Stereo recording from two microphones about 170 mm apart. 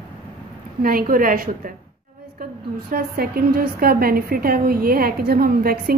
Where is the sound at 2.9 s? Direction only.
60° right (ahead or behind).